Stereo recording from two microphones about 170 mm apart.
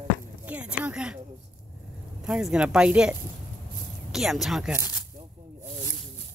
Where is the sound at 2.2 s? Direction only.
5° right (ahead or behind).